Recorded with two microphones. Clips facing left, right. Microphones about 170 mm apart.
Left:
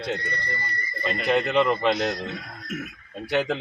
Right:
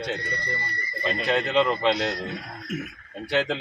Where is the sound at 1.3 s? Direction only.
15° left (ahead or behind).